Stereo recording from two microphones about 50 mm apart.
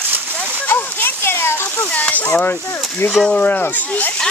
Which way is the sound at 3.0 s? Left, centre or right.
Left.